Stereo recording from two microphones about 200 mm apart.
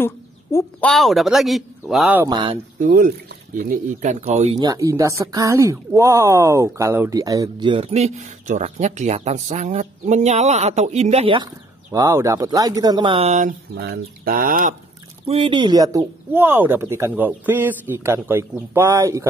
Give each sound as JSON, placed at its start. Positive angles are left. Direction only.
{"t": 0.0, "sound": "a woman's voice", "side_deg": 10}
{"t": 2.2, "sound": "speech", "side_deg": -25}
{"t": 2.8, "sound": "speech", "side_deg": -40}
{"t": 4.6, "sound": "speech", "side_deg": -15}
{"t": 13.7, "sound": "speech", "side_deg": -50}
{"t": 15.2, "sound": "speech", "side_deg": -25}